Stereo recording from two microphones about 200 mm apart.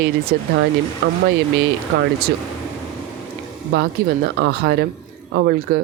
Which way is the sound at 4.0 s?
50° right (ahead or behind).